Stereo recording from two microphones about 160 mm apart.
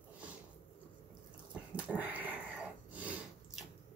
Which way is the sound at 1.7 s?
10° right (ahead or behind).